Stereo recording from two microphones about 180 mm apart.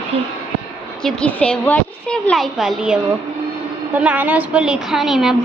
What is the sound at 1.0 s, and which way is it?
A woman's voice, 5° left (ahead or behind).